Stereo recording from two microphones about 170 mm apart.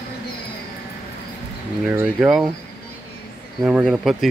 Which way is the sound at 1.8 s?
10° right (ahead or behind).